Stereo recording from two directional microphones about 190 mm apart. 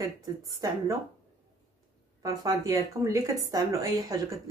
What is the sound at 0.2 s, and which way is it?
Speech, 20° right (ahead or behind).